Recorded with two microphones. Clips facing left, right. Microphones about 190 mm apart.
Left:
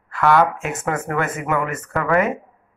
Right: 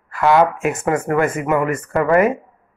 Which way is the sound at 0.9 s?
Centre (ahead or behind).